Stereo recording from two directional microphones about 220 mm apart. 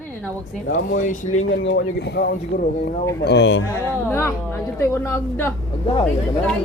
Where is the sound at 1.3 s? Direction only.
65° left (ahead or behind); by 2.9 s 40° left (ahead or behind).